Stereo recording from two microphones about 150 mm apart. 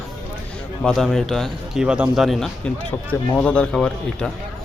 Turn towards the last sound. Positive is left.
turn(degrees=5)  # may be behind; listen again after turning